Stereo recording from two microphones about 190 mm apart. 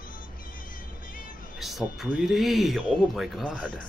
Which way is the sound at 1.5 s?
Centre (ahead or behind).